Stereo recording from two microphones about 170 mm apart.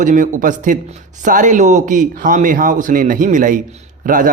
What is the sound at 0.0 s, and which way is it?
A man's voice, 50° right (ahead or behind).